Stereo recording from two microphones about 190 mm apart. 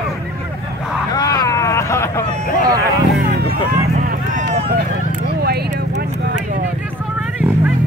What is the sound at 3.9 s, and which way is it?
Vehicle, 40° right (ahead or behind).